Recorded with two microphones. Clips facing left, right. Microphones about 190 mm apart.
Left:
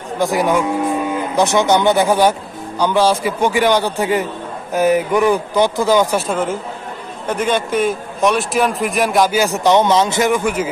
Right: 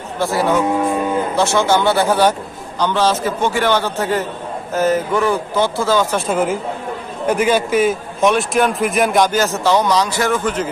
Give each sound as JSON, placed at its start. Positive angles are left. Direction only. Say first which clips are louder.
{"t": 0.2, "sound": "a man's voice", "louder": "even", "side_deg": 15}
{"t": 6.2, "sound": "a man's voice", "louder": "right 2 dB", "side_deg": -10}